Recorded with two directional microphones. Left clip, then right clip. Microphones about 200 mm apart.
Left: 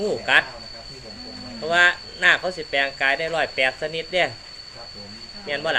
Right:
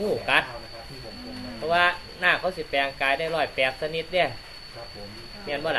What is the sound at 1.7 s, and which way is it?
Speech, 25° left (ahead or behind).